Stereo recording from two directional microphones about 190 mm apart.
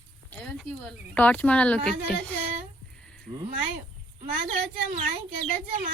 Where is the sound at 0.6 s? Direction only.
5° left (ahead or behind).